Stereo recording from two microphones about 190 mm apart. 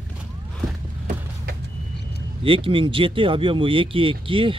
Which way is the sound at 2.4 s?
30° right (ahead or behind).